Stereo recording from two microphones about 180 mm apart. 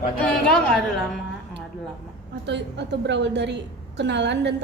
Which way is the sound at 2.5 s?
75° right (ahead or behind).